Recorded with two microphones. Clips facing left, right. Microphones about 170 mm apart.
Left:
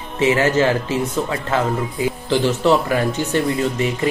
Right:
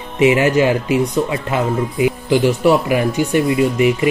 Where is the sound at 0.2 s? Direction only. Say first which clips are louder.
Right 3 dB; 15° right (ahead or behind).